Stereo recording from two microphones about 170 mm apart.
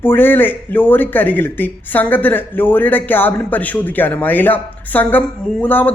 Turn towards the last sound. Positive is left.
turn(degrees=10)  # may be behind; listen again after turning